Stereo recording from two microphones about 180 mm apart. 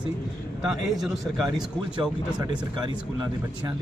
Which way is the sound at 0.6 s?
Centre (ahead or behind).